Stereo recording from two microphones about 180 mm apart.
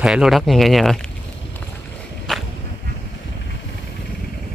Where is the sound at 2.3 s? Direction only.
Centre (ahead or behind).